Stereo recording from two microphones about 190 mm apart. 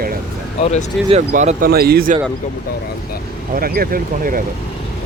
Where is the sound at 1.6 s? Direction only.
55° right (ahead or behind).